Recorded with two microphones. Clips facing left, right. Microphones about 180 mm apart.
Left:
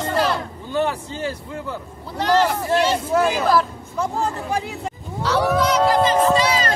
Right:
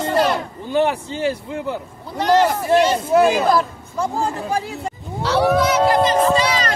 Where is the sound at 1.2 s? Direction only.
20° right (ahead or behind).